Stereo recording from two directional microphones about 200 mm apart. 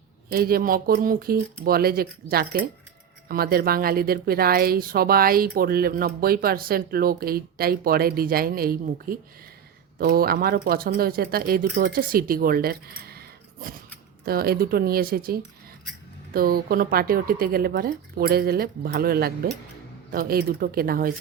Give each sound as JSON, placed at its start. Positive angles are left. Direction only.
{"t": 0.3, "sound": "speech", "side_deg": -50}
{"t": 13.1, "sound": "a sound", "side_deg": -50}
{"t": 14.3, "sound": "speech", "side_deg": -50}